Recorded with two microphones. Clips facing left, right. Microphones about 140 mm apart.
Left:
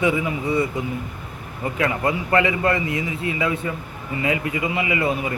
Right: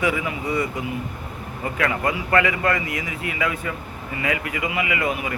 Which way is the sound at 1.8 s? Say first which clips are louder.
Left 1 dB; 25° left (ahead or behind).